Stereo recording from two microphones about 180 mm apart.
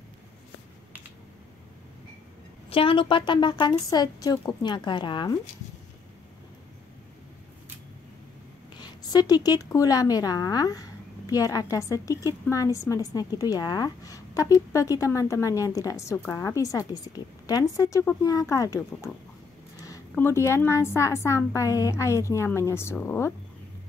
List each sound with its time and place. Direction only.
2.7 s a woman's voice: 30° left (ahead or behind)
8.7 s a woman's voice: 25° left (ahead or behind)